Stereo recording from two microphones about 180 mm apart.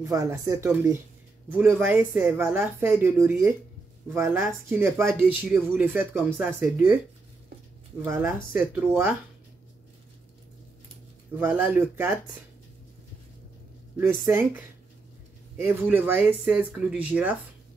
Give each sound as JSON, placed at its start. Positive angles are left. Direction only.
{"t": 0.0, "sound": "speech", "side_deg": -20}
{"t": 8.0, "sound": "speech", "side_deg": -10}
{"t": 11.3, "sound": "speech", "side_deg": -10}
{"t": 13.9, "sound": "speech", "side_deg": -10}